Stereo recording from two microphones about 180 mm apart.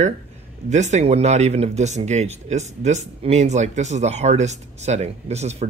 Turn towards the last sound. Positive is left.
turn(degrees=-40)  # may be behind; listen again after turning